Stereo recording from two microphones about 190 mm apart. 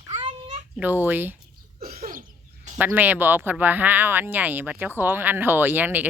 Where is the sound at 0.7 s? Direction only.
10° right (ahead or behind).